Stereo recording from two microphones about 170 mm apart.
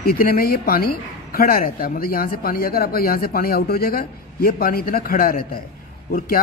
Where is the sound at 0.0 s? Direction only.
60° left (ahead or behind).